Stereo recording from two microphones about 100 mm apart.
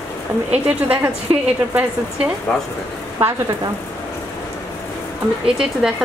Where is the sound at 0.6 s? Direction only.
15° right (ahead or behind).